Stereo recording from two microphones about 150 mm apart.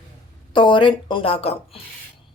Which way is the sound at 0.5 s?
35° left (ahead or behind).